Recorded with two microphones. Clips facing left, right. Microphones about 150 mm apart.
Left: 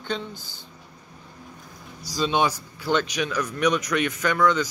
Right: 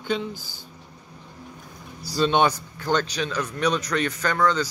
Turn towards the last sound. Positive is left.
turn(degrees=-35)  # may be behind; listen again after turning